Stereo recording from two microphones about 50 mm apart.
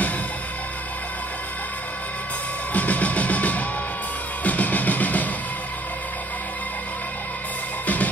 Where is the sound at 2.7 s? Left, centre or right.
Left.